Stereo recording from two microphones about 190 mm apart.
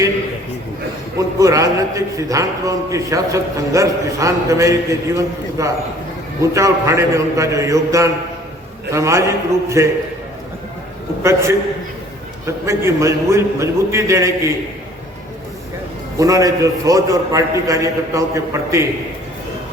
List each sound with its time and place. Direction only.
1.4 s a man's voice: 15° right (ahead or behind)
11.2 s a man's voice: 15° right (ahead or behind)
16.1 s a man's voice: 15° right (ahead or behind)